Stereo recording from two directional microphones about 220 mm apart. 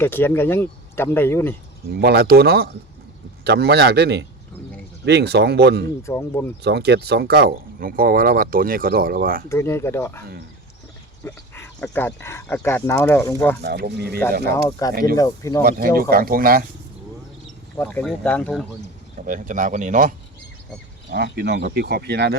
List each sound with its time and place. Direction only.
0.0 s speech: 10° left (ahead or behind)
2.0 s speech: 45° right (ahead or behind)
6.0 s speech: 10° left (ahead or behind)
6.6 s speech: 50° right (ahead or behind)
9.5 s speech: 10° left (ahead or behind)
13.6 s speech: 45° right (ahead or behind)
14.5 s speech: 15° left (ahead or behind)
16.0 s speech: 45° right (ahead or behind)
17.7 s speech: 10° left (ahead or behind)
19.2 s speech: 35° right (ahead or behind)
21.1 s speech: 50° right (ahead or behind)